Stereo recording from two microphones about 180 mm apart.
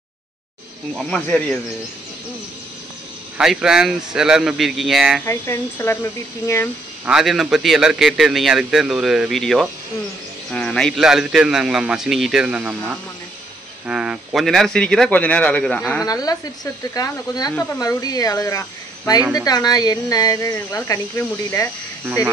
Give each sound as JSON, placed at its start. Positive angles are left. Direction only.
{"t": 0.9, "sound": "speech", "side_deg": 5}
{"t": 3.3, "sound": "speech", "side_deg": -5}
{"t": 5.2, "sound": "speech", "side_deg": 15}
{"t": 7.1, "sound": "speech", "side_deg": 0}
{"t": 16.1, "sound": "speech", "side_deg": 20}